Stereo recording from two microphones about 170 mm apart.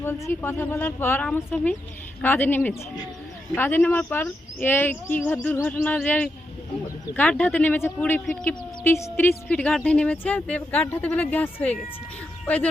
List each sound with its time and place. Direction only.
0.0 s speech: 15° left (ahead or behind)